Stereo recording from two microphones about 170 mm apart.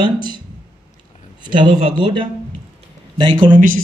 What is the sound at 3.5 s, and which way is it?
Speech, 55° right (ahead or behind).